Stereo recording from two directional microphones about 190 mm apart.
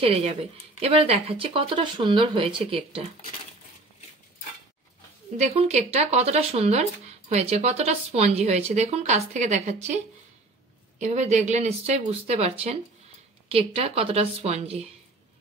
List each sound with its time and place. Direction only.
0.0 s speech: 30° right (ahead or behind)
5.4 s speech: 35° right (ahead or behind)